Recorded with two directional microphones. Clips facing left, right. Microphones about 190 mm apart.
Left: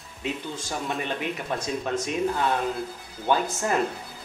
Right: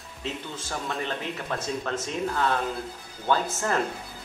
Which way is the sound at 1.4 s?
15° left (ahead or behind).